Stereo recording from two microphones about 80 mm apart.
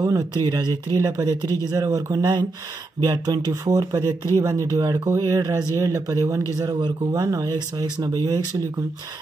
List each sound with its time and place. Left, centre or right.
0.4 s speech: right
0.7 s speech: left
1.0 s speech: right
4.4 s speech: right
5.4 s speech: right
5.9 s speech: right
6.7 s speech: right
7.2 s speech: right